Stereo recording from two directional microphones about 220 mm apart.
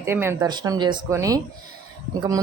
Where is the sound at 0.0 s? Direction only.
10° right (ahead or behind).